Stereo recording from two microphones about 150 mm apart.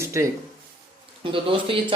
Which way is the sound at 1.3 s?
35° right (ahead or behind).